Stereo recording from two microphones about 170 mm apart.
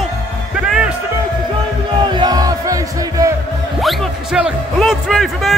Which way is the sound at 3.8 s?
5° right (ahead or behind).